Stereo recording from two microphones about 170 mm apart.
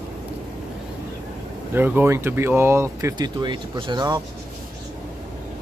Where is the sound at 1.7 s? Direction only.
10° right (ahead or behind).